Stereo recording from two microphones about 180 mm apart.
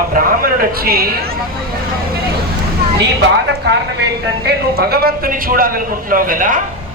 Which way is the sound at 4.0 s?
60° right (ahead or behind).